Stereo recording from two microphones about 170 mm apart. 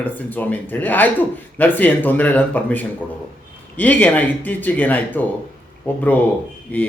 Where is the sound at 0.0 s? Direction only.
10° left (ahead or behind).